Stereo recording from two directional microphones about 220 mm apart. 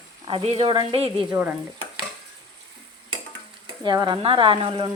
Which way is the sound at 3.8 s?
20° right (ahead or behind).